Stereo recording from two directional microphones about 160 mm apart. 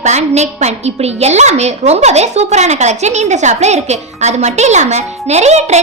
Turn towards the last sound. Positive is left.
turn(degrees=-45)  # may be behind; listen again after turning